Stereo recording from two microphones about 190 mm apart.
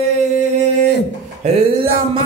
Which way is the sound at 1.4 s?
35° right (ahead or behind).